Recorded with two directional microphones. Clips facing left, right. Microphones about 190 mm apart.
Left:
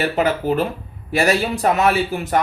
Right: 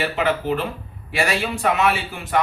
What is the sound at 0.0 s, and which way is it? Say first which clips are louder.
A man's voice: left 3 dB; 40° left (ahead or behind).